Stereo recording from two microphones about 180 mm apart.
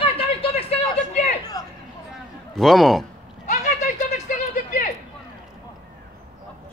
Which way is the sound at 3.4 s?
45° left (ahead or behind).